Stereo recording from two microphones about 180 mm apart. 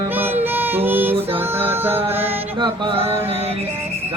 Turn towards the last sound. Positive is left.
turn(degrees=-25)  # may be behind; listen again after turning